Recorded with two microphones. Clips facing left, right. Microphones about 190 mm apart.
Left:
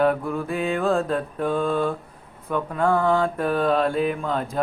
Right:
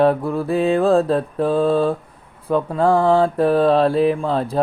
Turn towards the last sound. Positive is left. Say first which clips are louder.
# right 6 dB
turn(degrees=-35)  # may be behind; listen again after turning